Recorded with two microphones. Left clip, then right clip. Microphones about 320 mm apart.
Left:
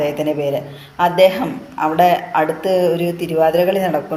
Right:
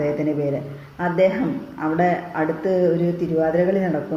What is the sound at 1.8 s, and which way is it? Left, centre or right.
A woman's voice, left.